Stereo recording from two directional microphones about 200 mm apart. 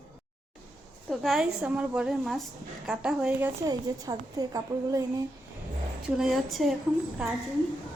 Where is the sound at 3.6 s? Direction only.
15° right (ahead or behind).